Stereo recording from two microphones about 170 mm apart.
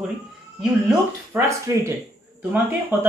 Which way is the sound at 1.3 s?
15° right (ahead or behind).